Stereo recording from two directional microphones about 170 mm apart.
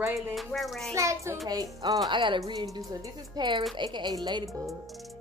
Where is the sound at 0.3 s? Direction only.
Centre (ahead or behind).